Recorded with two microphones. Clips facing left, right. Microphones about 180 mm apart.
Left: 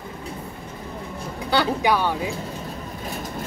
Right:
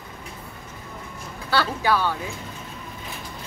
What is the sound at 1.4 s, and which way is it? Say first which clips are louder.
Speech: left 2 dB; 15° left (ahead or behind).